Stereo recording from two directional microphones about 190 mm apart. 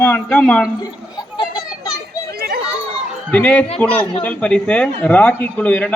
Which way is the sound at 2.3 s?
55° right (ahead or behind).